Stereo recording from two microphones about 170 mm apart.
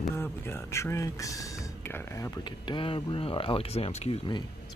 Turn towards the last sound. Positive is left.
turn(degrees=35)  # may be behind; listen again after turning